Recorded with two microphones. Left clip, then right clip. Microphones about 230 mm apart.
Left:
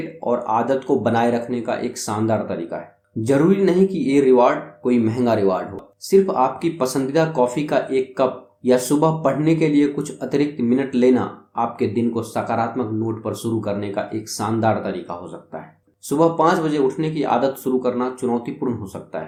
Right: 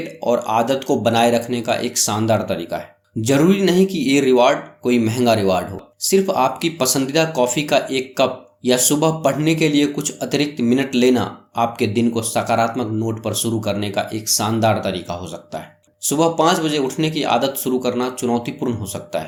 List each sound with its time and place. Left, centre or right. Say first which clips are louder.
0.3 s speech: right 2 dB; right